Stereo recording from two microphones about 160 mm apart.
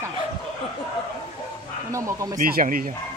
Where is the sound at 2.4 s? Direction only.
60° right (ahead or behind).